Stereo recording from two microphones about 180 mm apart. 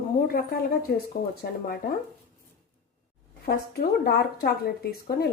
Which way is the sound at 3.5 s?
60° left (ahead or behind).